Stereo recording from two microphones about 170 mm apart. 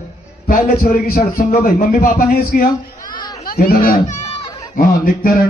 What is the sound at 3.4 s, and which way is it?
Speech, 60° left (ahead or behind).